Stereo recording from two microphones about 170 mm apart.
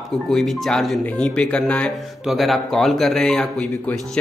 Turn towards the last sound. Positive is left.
turn(degrees=5)  # may be behind; listen again after turning